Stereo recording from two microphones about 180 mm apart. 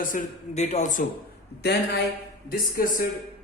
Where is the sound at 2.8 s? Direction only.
55° left (ahead or behind).